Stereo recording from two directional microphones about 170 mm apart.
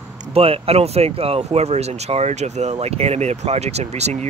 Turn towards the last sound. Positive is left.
turn(degrees=-40)  # may be behind; listen again after turning